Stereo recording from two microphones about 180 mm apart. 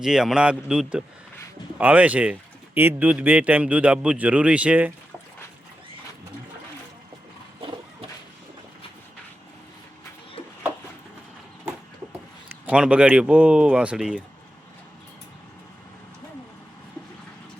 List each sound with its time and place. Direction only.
0.0 s speech: 5° right (ahead or behind)
12.5 s speech: 5° right (ahead or behind)